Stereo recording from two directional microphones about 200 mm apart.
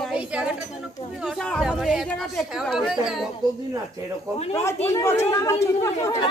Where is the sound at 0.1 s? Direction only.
5° right (ahead or behind).